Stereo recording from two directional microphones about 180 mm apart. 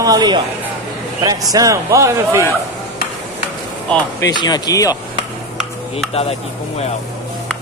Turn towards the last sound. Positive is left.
turn(degrees=35)  # may be behind; listen again after turning